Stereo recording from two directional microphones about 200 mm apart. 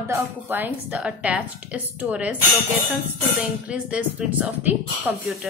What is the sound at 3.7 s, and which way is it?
Speech, 5° right (ahead or behind).